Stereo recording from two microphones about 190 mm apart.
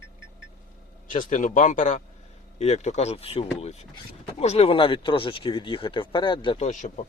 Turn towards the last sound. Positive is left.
turn(degrees=40)  # may be behind; listen again after turning